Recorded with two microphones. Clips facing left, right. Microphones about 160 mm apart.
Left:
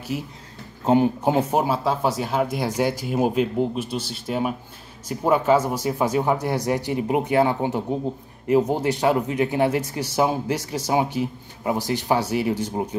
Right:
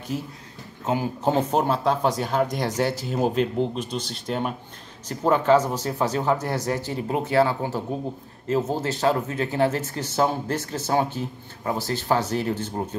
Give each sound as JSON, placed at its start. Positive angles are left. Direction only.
{"t": 0.1, "sound": "speech", "side_deg": 10}
{"t": 0.8, "sound": "speech", "side_deg": 25}
{"t": 1.2, "sound": "speech", "side_deg": 10}